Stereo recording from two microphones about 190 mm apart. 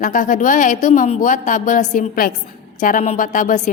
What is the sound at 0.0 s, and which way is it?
A woman's voice, 45° left (ahead or behind).